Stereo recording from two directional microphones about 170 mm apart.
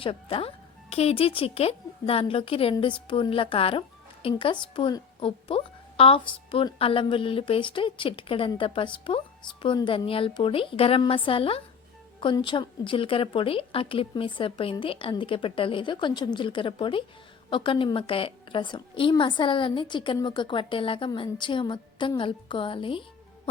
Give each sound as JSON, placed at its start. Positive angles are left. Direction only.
{"t": 0.0, "sound": "a woman's voice", "side_deg": 30}